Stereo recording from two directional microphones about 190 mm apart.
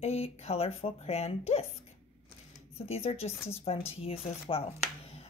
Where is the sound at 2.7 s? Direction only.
30° left (ahead or behind).